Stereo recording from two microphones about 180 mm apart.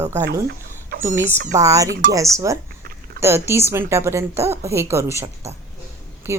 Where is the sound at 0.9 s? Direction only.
60° right (ahead or behind).